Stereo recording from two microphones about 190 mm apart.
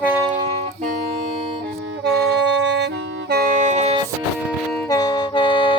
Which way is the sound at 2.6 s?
70° right (ahead or behind).